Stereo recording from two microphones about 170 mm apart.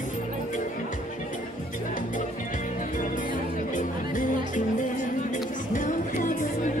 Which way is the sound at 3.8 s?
50° left (ahead or behind).